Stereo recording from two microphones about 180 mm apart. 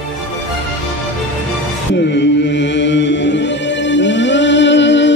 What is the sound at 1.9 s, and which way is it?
Chant, 70° left (ahead or behind).